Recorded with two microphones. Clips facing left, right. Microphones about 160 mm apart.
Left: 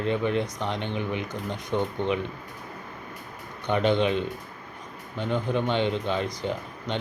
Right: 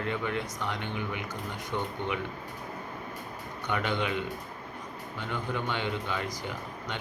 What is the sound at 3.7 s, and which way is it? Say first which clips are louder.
Speech: left 8 dB; 20° left (ahead or behind).